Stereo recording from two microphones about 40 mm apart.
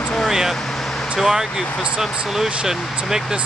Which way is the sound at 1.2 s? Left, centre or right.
Centre.